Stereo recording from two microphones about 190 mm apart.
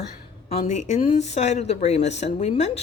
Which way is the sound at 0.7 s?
40° left (ahead or behind).